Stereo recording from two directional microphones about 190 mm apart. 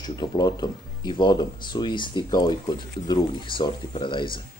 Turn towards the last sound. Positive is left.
turn(degrees=25)  # may be behind; listen again after turning